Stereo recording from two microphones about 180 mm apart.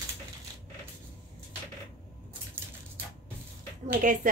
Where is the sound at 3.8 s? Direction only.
45° right (ahead or behind).